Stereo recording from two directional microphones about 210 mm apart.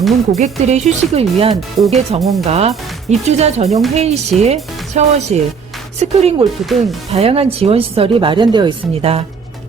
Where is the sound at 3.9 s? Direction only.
30° right (ahead or behind).